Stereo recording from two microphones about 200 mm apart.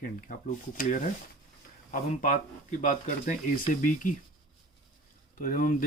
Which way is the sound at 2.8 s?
40° left (ahead or behind).